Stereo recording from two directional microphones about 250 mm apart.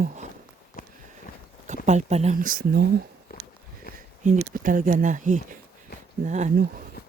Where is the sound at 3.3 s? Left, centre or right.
Left.